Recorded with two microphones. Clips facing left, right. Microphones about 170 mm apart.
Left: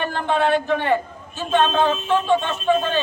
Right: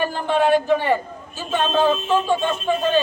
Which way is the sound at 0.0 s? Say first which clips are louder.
Right 1 dB; 10° right (ahead or behind).